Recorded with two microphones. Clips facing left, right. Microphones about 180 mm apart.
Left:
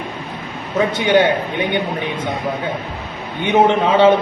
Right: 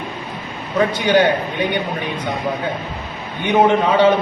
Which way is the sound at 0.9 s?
25° left (ahead or behind).